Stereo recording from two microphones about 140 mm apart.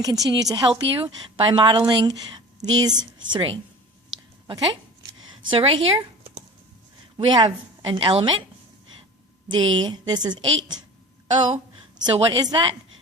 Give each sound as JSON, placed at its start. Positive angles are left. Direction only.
{"t": 0.0, "sound": "a woman's voice", "side_deg": -25}
{"t": 9.5, "sound": "a woman's voice", "side_deg": -35}
{"t": 10.4, "sound": "a woman's voice", "side_deg": -45}
{"t": 12.0, "sound": "a woman's voice", "side_deg": -40}